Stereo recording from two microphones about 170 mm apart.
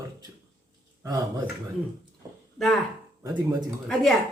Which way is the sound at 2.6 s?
Centre (ahead or behind).